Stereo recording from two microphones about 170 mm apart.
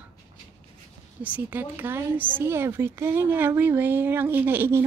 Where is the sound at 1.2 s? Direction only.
10° right (ahead or behind).